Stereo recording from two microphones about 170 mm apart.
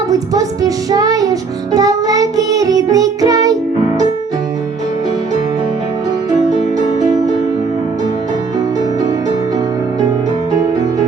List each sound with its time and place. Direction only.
0.1 s music: 20° right (ahead or behind)